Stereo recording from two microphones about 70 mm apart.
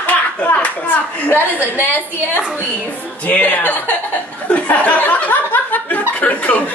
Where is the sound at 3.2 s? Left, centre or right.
Left.